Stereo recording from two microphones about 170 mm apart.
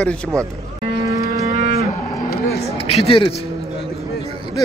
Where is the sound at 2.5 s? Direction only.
35° left (ahead or behind).